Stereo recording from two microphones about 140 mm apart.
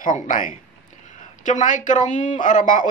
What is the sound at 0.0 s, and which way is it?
A man's voice, 70° left (ahead or behind).